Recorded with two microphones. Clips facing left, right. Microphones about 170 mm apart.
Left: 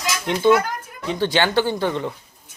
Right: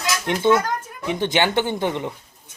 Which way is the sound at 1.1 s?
20° right (ahead or behind).